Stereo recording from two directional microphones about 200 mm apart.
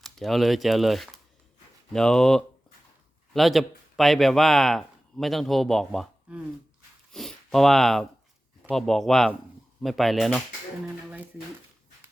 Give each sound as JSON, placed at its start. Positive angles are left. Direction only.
{"t": 0.0, "sound": "speech", "side_deg": 0}
{"t": 7.1, "sound": "sniff", "side_deg": 0}
{"t": 8.7, "sound": "speech", "side_deg": 0}